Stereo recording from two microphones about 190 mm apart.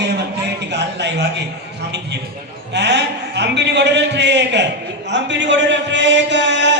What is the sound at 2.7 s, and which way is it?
A man's voice, 65° right (ahead or behind).